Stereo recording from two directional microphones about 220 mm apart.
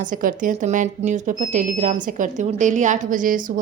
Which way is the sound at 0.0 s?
40° right (ahead or behind).